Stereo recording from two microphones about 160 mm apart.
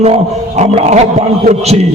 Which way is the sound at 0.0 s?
45° right (ahead or behind).